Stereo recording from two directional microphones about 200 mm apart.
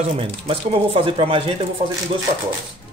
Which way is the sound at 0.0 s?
30° right (ahead or behind).